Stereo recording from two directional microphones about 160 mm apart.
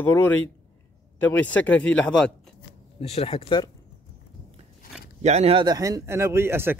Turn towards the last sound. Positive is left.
turn(degrees=-15)  # may be behind; listen again after turning